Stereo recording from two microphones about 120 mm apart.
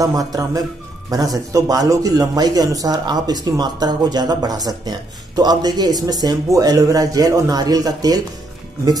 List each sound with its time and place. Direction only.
0.0 s a man's voice: 30° right (ahead or behind)